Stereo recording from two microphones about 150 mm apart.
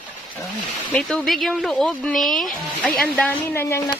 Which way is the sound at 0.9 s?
5° left (ahead or behind).